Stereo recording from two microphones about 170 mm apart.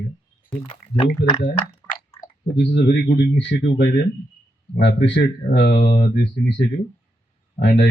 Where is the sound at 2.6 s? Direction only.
90° left.